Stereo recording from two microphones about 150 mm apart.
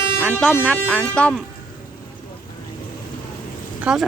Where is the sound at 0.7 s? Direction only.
5° left (ahead or behind).